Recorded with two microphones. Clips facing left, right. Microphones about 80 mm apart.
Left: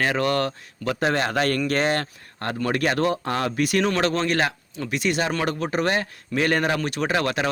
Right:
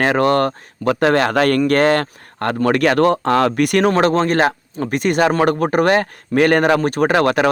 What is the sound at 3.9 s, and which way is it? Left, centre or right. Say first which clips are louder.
Speech: right 7 dB; right.